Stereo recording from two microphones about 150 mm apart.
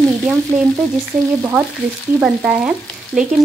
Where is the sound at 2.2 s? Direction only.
5° right (ahead or behind).